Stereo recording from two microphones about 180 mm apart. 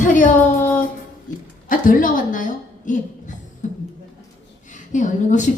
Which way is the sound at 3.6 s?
45° left (ahead or behind).